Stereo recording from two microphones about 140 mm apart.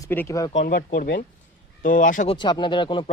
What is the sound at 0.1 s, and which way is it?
Speech, 20° left (ahead or behind).